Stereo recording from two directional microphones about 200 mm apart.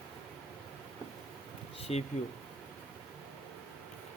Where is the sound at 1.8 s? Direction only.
30° left (ahead or behind).